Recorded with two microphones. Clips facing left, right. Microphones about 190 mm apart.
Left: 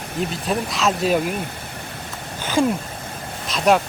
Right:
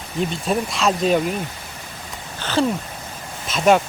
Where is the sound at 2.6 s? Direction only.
15° left (ahead or behind).